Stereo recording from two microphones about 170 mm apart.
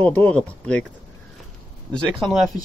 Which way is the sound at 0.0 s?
10° left (ahead or behind).